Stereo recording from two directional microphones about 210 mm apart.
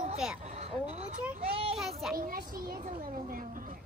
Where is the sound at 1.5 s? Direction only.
25° right (ahead or behind).